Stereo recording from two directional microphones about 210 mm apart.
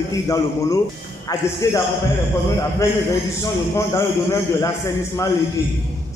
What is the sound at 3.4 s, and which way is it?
A man's voice, 15° left (ahead or behind).